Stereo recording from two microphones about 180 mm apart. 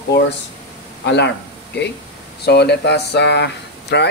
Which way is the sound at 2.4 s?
65° left (ahead or behind).